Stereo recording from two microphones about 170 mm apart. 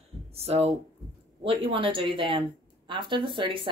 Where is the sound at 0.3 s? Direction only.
35° right (ahead or behind).